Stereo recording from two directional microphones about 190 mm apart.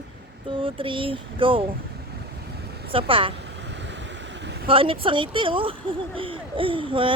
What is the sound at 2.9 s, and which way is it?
Speech, 25° right (ahead or behind).